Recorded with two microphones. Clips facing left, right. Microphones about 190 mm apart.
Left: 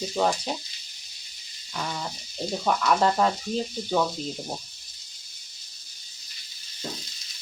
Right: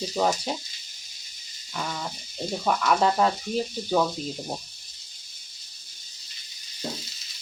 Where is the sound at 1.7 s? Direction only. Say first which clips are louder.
Even; centre (ahead or behind).